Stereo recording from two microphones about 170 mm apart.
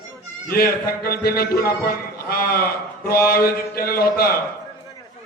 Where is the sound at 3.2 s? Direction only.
60° left (ahead or behind).